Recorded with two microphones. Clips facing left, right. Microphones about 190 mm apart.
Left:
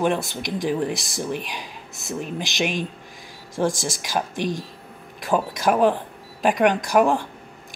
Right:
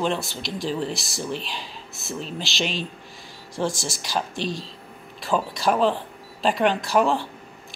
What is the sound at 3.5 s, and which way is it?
Speech, 45° left (ahead or behind).